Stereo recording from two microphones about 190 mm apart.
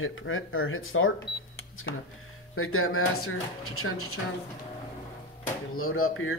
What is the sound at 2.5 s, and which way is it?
Speech, 90° left.